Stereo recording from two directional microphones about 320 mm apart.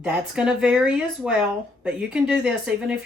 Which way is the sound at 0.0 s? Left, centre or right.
Centre.